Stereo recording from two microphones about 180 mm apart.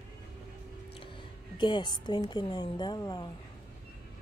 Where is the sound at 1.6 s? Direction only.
25° left (ahead or behind).